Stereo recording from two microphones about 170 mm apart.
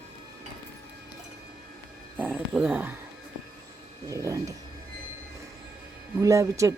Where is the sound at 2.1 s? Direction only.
10° right (ahead or behind).